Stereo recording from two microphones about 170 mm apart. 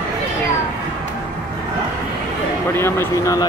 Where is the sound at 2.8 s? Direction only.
15° left (ahead or behind).